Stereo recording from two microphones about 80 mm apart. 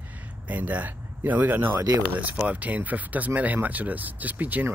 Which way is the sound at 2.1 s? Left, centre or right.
Centre.